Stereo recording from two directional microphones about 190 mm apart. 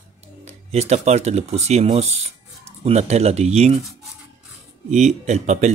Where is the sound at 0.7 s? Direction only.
35° right (ahead or behind).